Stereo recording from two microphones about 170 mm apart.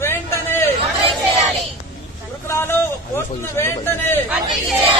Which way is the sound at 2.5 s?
15° left (ahead or behind).